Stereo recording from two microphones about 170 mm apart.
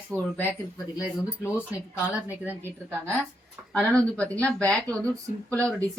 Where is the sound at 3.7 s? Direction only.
5° left (ahead or behind).